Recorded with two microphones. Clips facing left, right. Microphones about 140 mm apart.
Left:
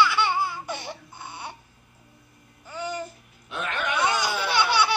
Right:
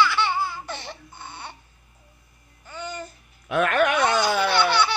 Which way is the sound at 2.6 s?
10° left (ahead or behind).